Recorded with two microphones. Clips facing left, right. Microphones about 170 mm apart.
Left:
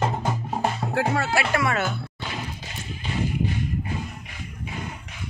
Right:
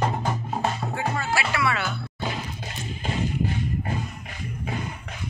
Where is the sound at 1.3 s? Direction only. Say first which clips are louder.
Left 2 dB; 45° left (ahead or behind).